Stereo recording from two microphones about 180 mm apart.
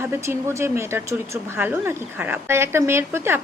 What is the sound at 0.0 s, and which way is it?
A woman's voice, 15° right (ahead or behind).